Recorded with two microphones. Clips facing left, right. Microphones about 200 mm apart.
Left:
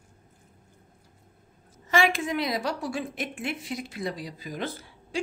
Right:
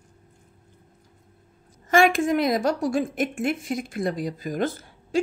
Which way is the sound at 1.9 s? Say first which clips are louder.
Right 6 dB; 50° right (ahead or behind).